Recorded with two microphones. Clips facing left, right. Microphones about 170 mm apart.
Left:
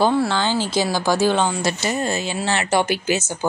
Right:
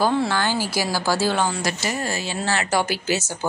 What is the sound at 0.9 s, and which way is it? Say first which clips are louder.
Speech: left 3 dB; 20° left (ahead or behind).